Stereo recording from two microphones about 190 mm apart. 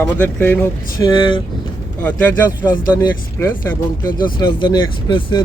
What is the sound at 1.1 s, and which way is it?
Speech, 25° left (ahead or behind).